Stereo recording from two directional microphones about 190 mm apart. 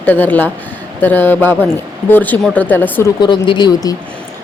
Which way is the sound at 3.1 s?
25° left (ahead or behind).